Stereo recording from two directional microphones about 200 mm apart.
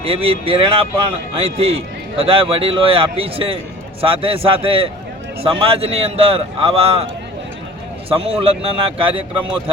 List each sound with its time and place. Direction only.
0.0 s a man's voice: 30° right (ahead or behind)
8.1 s a man's voice: 30° right (ahead or behind)